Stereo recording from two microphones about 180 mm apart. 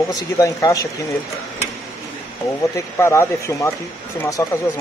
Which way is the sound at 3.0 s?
15° left (ahead or behind).